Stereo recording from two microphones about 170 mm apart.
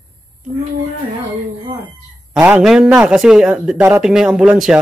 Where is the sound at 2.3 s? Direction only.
5° right (ahead or behind).